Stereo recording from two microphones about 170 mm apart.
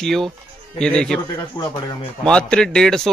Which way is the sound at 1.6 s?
20° left (ahead or behind).